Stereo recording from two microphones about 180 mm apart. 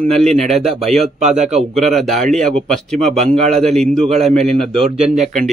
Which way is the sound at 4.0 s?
35° right (ahead or behind).